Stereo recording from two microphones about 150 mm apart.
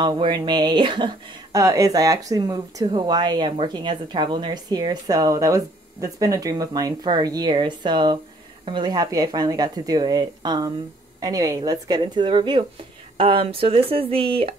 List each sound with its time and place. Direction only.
0.0 s speech: 30° right (ahead or behind)
1.6 s speech: 20° right (ahead or behind); by 14.5 s 35° right (ahead or behind)